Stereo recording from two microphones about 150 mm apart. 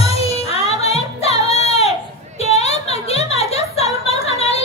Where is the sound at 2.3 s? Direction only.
45° left (ahead or behind).